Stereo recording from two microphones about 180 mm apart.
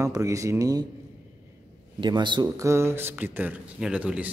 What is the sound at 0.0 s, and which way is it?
Speech, 15° right (ahead or behind).